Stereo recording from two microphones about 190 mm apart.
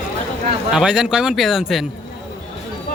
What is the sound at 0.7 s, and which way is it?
A man's voice, 5° right (ahead or behind).